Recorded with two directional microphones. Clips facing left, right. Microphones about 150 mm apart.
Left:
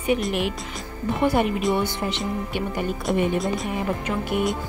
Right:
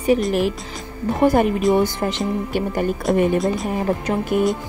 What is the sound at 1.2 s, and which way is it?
Speech, 40° right (ahead or behind).